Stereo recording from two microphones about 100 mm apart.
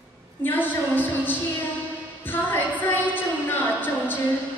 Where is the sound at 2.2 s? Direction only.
20° left (ahead or behind).